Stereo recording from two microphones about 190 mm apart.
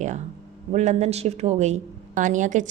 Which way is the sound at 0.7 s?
35° right (ahead or behind).